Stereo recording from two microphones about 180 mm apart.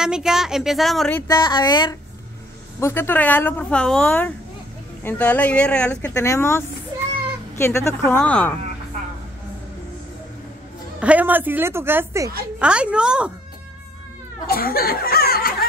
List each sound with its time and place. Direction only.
0.0 s a woman's voice: 5° right (ahead or behind)
1.2 s a sound: 20° left (ahead or behind)
2.8 s speech: 15° left (ahead or behind)
11.0 s a woman's voice: 10° right (ahead or behind)
14.5 s speech: 55° left (ahead or behind)